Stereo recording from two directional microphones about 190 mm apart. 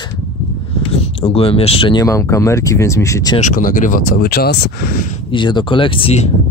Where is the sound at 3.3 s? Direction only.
40° left (ahead or behind).